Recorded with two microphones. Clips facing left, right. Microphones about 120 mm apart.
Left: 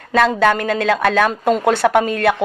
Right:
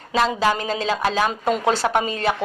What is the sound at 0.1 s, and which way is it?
Speech, 55° left (ahead or behind).